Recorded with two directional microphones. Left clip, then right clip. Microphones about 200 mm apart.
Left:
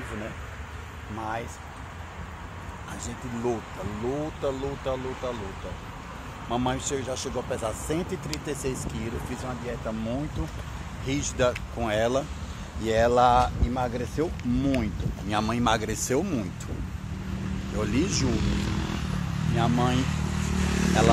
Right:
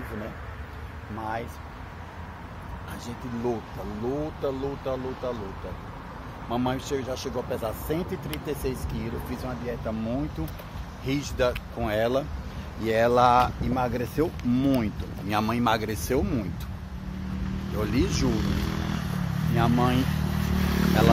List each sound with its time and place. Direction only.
4.4 s speech: 15° left (ahead or behind)
6.5 s speech: 10° left (ahead or behind)
12.8 s speech: centre (ahead or behind)
17.7 s speech: 5° left (ahead or behind)
18.3 s vehicle: 55° right (ahead or behind)
19.5 s speech: 5° right (ahead or behind)
20.0 s vehicle: 45° right (ahead or behind)